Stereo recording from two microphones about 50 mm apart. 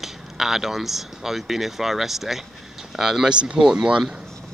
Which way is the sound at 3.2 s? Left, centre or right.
Centre.